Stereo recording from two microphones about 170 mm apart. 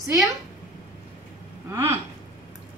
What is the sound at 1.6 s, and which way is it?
Speech, 15° right (ahead or behind).